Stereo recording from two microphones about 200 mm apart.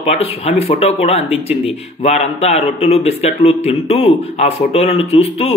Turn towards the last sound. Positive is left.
turn(degrees=30)  # may be behind; listen again after turning